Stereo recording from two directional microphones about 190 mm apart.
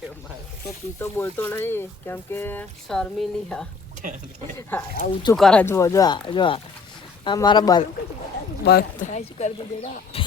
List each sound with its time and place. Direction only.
0.9 s speech: 10° left (ahead or behind)
4.0 s speech: 40° right (ahead or behind)
5.0 s speech: 40° left (ahead or behind)
5.4 s speech: 5° left (ahead or behind); by 7.9 s 20° left (ahead or behind)
8.6 s speech: 55° left (ahead or behind)
9.0 s speech: 35° left (ahead or behind)